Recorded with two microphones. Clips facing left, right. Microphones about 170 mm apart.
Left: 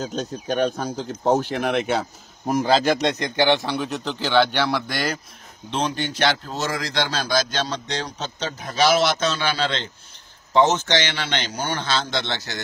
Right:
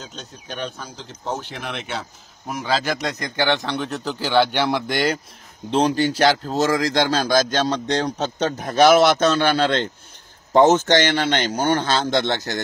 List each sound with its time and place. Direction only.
0.0 s speech: 45° left (ahead or behind); by 3.3 s 30° left (ahead or behind)
3.3 s speech: 15° left (ahead or behind); by 5.1 s 20° right (ahead or behind)
5.7 s a man's voice: 40° right (ahead or behind)